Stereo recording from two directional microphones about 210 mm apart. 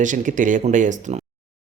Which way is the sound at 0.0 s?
35° right (ahead or behind).